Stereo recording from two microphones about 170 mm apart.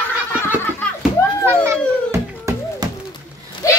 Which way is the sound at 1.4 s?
15° right (ahead or behind).